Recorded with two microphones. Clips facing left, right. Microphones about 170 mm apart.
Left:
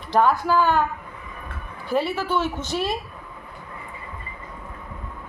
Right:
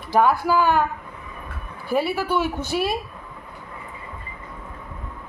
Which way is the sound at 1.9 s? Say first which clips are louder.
Right 1 dB; 10° right (ahead or behind).